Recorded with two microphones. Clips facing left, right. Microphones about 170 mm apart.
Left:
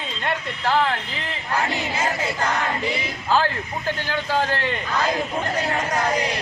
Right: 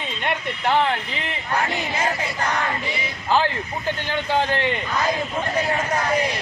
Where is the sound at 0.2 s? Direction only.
25° right (ahead or behind).